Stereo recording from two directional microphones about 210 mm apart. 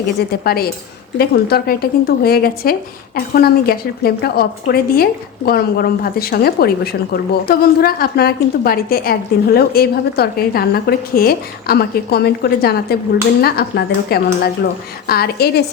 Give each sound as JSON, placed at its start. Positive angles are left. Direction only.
{"t": 0.2, "sound": "a woman's voice", "side_deg": 45}